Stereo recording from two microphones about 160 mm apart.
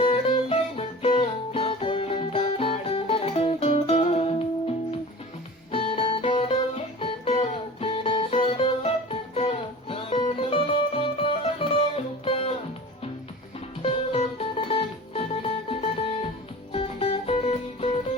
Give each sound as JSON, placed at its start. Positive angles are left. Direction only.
{"t": 0.0, "sound": "music", "side_deg": 35}
{"t": 5.7, "sound": "music", "side_deg": 35}
{"t": 13.8, "sound": "music", "side_deg": 35}